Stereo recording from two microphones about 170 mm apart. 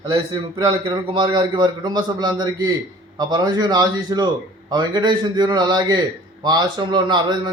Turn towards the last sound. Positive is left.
turn(degrees=-25)  # may be behind; listen again after turning